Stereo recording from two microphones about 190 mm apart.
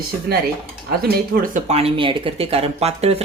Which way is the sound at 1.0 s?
55° right (ahead or behind).